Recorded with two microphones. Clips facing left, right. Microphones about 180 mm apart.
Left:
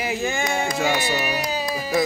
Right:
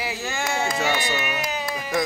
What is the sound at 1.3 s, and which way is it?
Speech, 35° left (ahead or behind).